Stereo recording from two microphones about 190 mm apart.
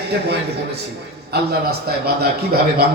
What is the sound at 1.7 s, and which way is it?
Speech, 55° right (ahead or behind).